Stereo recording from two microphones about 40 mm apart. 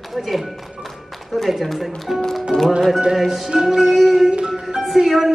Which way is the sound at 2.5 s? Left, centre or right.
Left.